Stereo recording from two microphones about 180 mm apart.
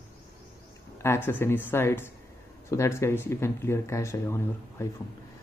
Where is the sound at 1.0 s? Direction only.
10° left (ahead or behind).